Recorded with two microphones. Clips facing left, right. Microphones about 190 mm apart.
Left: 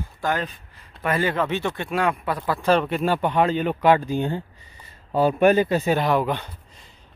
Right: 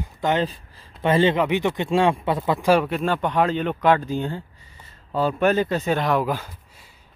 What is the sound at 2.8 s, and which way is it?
Speech, 5° left (ahead or behind).